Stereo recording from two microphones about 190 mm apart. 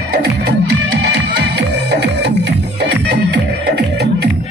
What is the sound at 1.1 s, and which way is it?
Music, 65° right (ahead or behind).